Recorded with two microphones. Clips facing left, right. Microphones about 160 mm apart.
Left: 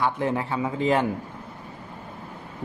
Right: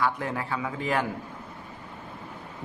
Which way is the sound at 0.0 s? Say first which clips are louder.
Left 4 dB; 25° left (ahead or behind).